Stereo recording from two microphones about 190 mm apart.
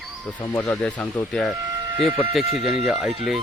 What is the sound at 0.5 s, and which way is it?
Speech, 10° left (ahead or behind).